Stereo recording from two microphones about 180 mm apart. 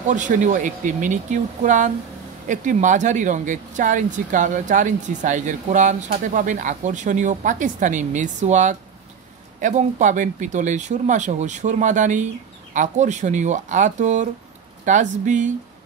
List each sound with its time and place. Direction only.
0.1 s speech: 45° right (ahead or behind)